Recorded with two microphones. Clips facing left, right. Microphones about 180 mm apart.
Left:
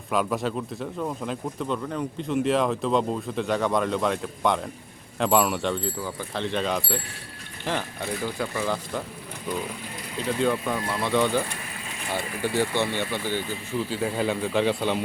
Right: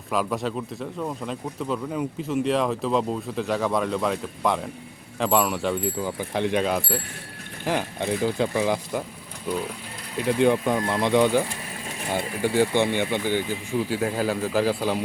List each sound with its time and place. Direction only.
0.1 s speech: centre (ahead or behind)
5.8 s speech: 15° right (ahead or behind)